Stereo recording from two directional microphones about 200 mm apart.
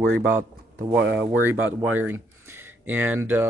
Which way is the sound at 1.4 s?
10° right (ahead or behind).